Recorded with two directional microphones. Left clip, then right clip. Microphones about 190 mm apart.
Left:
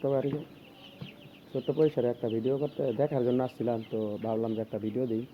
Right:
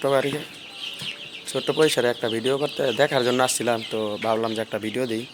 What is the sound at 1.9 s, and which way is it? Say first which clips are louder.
Speech: right 8 dB; 15° right (ahead or behind).